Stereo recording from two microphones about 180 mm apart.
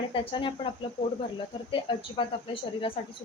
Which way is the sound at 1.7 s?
30° left (ahead or behind).